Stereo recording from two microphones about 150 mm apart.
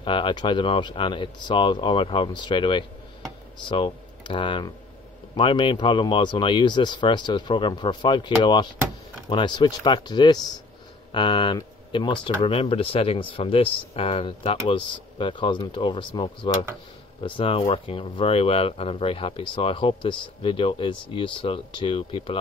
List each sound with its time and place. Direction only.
0.0 s speech: 35° left (ahead or behind)